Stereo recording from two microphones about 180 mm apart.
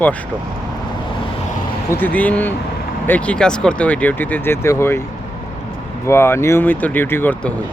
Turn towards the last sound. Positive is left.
turn(degrees=10)  # may be behind; listen again after turning